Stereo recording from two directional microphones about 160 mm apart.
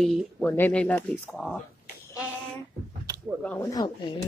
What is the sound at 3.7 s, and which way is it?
Speech, 30° left (ahead or behind).